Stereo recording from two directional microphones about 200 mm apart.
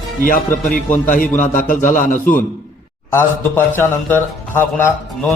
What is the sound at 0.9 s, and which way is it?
A man's voice, 40° left (ahead or behind).